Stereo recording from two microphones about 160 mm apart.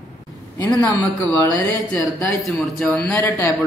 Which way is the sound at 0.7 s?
15° left (ahead or behind).